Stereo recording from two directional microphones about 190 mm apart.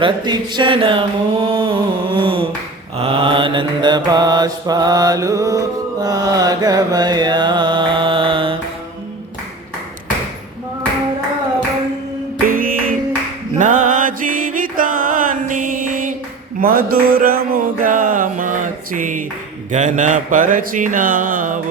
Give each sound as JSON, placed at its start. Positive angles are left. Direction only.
{"t": 0.0, "sound": "mantra", "side_deg": -25}
{"t": 12.5, "sound": "music", "side_deg": -45}
{"t": 13.6, "sound": "mantra", "side_deg": -40}
{"t": 16.6, "sound": "a sound", "side_deg": -50}
{"t": 19.7, "sound": "mantra", "side_deg": -40}